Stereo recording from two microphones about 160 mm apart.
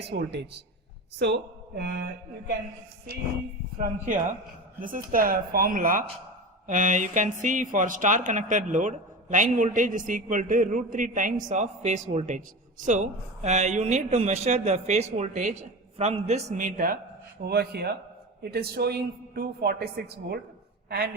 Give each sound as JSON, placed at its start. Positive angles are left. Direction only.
{"t": 0.0, "sound": "speech", "side_deg": -90}
{"t": 3.8, "sound": "speech", "side_deg": -55}
{"t": 17.4, "sound": "a woman's voice", "side_deg": -75}